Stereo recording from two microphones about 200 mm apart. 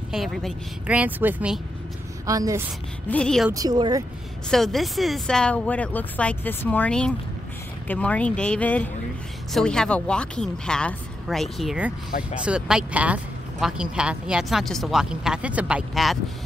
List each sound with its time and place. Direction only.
0.1 s a woman's voice: centre (ahead or behind); by 2.6 s 15° right (ahead or behind)
3.1 s speech: 5° left (ahead or behind)
3.5 s a woman's voice: 20° right (ahead or behind)
4.5 s speech: centre (ahead or behind)